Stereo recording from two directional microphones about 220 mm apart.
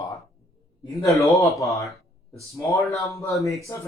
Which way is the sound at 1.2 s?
15° left (ahead or behind).